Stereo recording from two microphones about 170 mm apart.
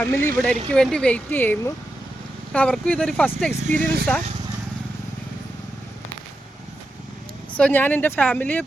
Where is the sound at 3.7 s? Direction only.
45° right (ahead or behind).